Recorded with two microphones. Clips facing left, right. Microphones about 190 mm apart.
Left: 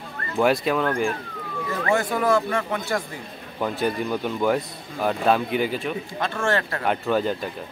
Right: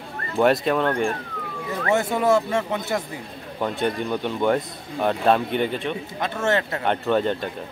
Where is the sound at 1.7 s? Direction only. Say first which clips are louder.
Right 1 dB; 25° right (ahead or behind).